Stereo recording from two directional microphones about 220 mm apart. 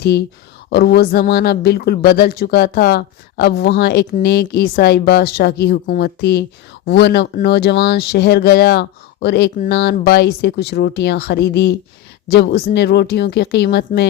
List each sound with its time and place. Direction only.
0.0 s speech: 45° left (ahead or behind)